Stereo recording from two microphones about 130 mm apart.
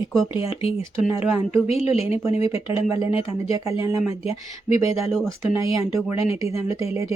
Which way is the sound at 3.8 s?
20° right (ahead or behind).